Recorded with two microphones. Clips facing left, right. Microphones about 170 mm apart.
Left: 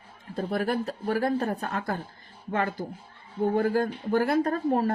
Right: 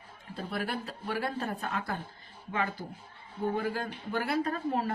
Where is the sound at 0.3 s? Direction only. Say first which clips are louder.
Left 8 dB; 45° left (ahead or behind).